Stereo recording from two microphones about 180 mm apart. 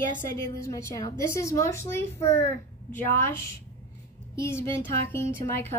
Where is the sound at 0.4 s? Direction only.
15° left (ahead or behind).